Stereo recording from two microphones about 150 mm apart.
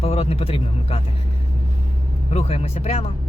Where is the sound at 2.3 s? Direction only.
45° left (ahead or behind).